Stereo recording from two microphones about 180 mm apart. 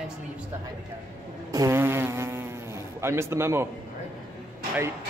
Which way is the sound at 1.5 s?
15° right (ahead or behind).